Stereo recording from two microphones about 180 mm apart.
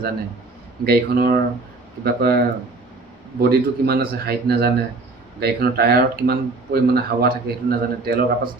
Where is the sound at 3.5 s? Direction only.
60° right (ahead or behind).